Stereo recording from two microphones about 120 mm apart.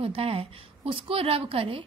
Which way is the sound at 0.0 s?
50° right (ahead or behind).